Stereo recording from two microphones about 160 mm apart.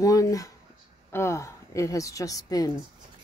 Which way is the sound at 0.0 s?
20° left (ahead or behind).